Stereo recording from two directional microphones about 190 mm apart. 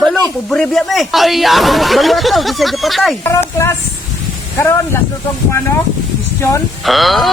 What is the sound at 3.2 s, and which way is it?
Speech, 15° left (ahead or behind).